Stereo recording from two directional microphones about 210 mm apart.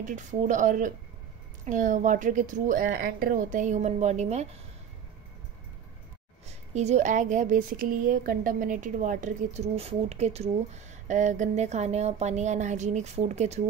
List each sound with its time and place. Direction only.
0.0 s speech: 35° right (ahead or behind)
2.9 s speech: 50° right (ahead or behind); by 4.5 s 30° right (ahead or behind)
6.4 s speech: 30° right (ahead or behind)